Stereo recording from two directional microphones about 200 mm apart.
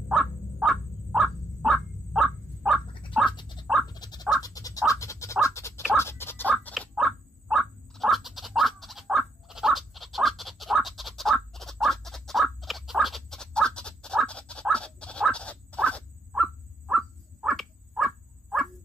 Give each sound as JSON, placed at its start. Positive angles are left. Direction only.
{"t": 0.1, "sound": "bird", "side_deg": 0}
{"t": 3.3, "sound": "a sound", "side_deg": 25}
{"t": 3.8, "sound": "frog", "side_deg": 20}
{"t": 4.4, "sound": "scratch", "side_deg": 15}
{"t": 6.5, "sound": "bird", "side_deg": 5}